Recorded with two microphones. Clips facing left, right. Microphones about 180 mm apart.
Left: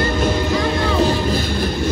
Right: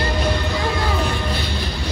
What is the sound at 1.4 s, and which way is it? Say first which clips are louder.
Music: left 7 dB; 50° left (ahead or behind).